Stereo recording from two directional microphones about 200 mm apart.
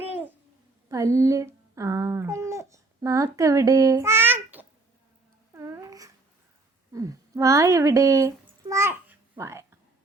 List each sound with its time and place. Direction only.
0.9 s speech: 15° right (ahead or behind)
5.5 s babbling: 15° right (ahead or behind)
6.9 s speech: 15° right (ahead or behind)
8.7 s babbling: 10° right (ahead or behind)